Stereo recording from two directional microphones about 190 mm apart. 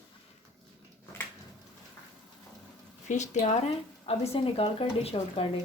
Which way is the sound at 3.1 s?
40° left (ahead or behind).